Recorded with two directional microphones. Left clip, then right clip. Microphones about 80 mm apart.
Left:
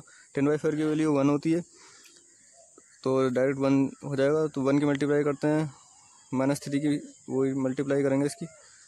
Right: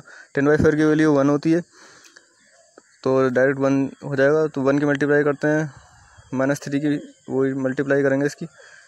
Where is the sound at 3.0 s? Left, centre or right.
Right.